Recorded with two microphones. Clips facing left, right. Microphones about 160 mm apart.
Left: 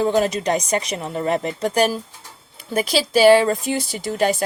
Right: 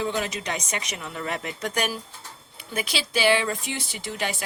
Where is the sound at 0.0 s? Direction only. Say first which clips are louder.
Left 9 dB; 40° left (ahead or behind).